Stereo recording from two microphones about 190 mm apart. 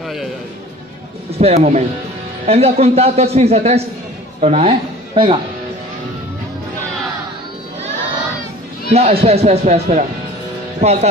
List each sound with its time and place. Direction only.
1.4 s a man's voice: 35° right (ahead or behind)
8.9 s a man's voice: 35° right (ahead or behind)